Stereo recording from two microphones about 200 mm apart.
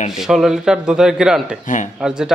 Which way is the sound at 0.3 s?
Centre (ahead or behind).